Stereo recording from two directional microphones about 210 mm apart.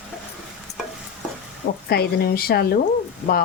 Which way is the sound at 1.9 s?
45° left (ahead or behind).